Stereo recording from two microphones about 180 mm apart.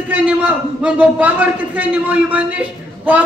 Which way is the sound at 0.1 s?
10° right (ahead or behind).